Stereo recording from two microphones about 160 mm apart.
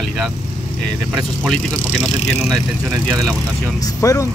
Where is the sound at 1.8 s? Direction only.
45° left (ahead or behind).